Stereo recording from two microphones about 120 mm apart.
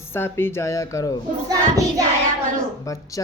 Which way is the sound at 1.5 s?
30° right (ahead or behind).